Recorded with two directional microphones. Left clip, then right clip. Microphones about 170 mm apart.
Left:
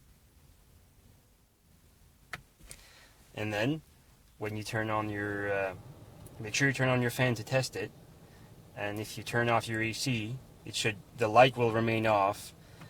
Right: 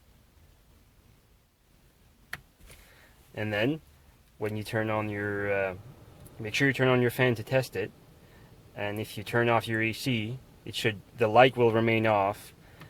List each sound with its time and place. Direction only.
3.3 s speech: 35° right (ahead or behind)